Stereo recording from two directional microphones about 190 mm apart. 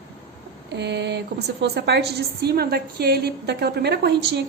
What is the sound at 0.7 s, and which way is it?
A woman's voice, 65° right (ahead or behind).